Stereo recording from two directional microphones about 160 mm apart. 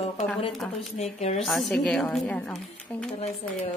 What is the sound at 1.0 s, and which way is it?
Speech, 40° left (ahead or behind).